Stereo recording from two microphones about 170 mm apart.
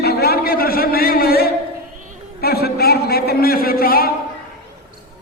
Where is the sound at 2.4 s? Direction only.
65° left (ahead or behind).